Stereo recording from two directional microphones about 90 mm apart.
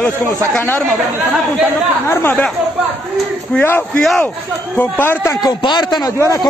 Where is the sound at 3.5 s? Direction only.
20° left (ahead or behind).